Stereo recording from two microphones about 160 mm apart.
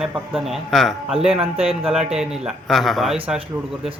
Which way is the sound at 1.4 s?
40° right (ahead or behind).